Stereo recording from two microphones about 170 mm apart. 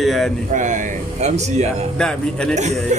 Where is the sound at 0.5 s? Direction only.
50° right (ahead or behind).